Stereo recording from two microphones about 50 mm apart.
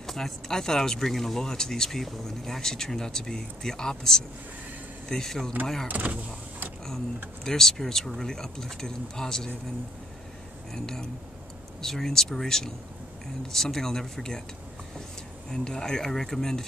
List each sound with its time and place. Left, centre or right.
0.0 s speech: centre
5.9 s speech: right
7.4 s speech: centre
10.7 s speech: centre
15.5 s speech: centre